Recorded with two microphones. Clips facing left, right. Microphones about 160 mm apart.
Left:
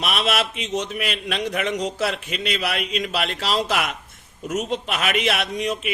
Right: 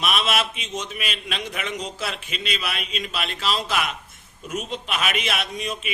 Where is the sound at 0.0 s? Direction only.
65° left (ahead or behind).